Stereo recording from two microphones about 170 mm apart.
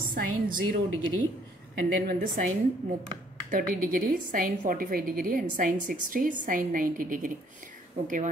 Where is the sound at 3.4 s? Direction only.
55° right (ahead or behind).